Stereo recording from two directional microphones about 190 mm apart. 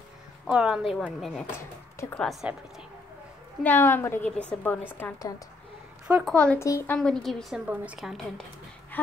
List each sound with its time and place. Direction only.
0.5 s a woman's voice: 5° right (ahead or behind)
2.0 s a woman's voice: 15° left (ahead or behind)
3.6 s a woman's voice: 10° left (ahead or behind)
6.0 s speech: 5° right (ahead or behind)
6.3 s a woman's voice: 5° left (ahead or behind)
7.0 s a woman's voice: 5° left (ahead or behind)